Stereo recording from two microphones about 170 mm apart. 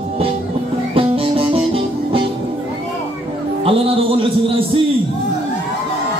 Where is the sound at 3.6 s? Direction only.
30° right (ahead or behind).